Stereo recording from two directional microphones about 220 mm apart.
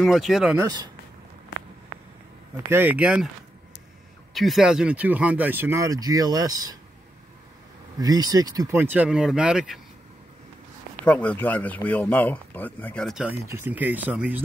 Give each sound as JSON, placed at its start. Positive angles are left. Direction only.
{"t": 0.0, "sound": "speech", "side_deg": 0}
{"t": 0.6, "sound": "speech", "side_deg": -20}
{"t": 2.5, "sound": "speech", "side_deg": -10}
{"t": 4.3, "sound": "speech", "side_deg": 0}
{"t": 8.0, "sound": "speech", "side_deg": -15}
{"t": 11.1, "sound": "speech", "side_deg": 5}